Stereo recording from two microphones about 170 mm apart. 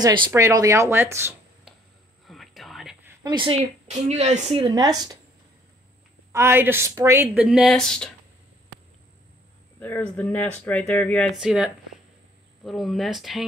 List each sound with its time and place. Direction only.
0.3 s a woman's voice: 20° right (ahead or behind)
2.2 s whispering: centre (ahead or behind)
3.3 s speech: 30° right (ahead or behind)
4.6 s a woman's voice: 20° right (ahead or behind)
6.3 s a woman's voice: 15° right (ahead or behind)
7.4 s speech: centre (ahead or behind)
9.8 s speech: 10° left (ahead or behind)
11.3 s speech: 5° right (ahead or behind)